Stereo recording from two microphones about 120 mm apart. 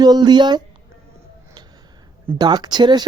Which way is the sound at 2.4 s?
35° right (ahead or behind).